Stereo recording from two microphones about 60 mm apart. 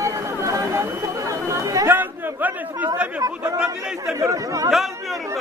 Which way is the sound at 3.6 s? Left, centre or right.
Centre.